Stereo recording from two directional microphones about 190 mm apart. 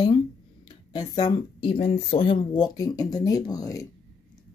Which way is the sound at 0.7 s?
20° left (ahead or behind).